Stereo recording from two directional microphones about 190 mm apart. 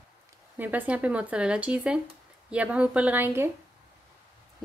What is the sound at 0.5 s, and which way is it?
Speech, 10° right (ahead or behind).